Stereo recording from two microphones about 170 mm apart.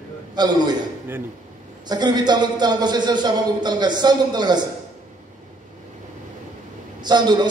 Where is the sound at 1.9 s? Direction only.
25° right (ahead or behind).